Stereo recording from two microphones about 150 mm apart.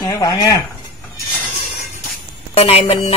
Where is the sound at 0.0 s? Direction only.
20° left (ahead or behind).